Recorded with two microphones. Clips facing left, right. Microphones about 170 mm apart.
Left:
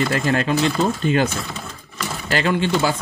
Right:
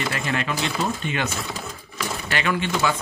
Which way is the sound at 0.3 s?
35° left (ahead or behind).